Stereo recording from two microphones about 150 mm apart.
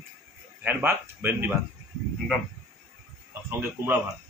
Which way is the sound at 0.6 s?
15° right (ahead or behind).